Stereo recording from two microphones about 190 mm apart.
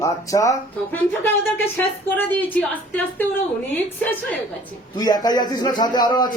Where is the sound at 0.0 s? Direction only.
15° left (ahead or behind).